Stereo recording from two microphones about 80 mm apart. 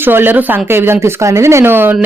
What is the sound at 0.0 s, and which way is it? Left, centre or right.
Speech, right.